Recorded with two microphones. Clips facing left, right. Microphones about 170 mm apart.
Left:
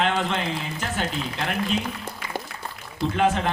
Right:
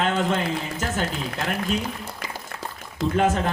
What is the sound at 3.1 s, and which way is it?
Speech, 40° right (ahead or behind).